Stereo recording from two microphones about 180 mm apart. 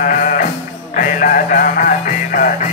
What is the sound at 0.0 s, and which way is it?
Music, 45° left (ahead or behind).